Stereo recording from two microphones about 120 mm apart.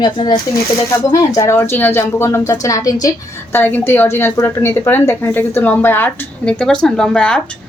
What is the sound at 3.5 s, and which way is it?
A woman's voice, 15° left (ahead or behind).